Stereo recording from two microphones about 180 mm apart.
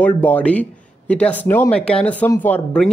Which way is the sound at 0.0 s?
10° left (ahead or behind).